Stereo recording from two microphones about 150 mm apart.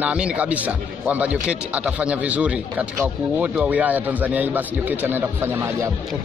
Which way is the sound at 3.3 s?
10° right (ahead or behind).